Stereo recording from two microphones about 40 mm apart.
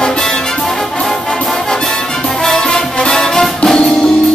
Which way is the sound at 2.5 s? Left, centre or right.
Centre.